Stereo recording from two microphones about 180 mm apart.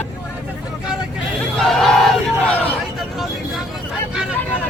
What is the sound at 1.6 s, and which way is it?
Battle cry, centre (ahead or behind).